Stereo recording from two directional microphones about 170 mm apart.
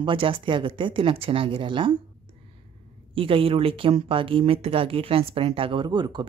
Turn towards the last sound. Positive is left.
turn(degrees=-25)  # may be behind; listen again after turning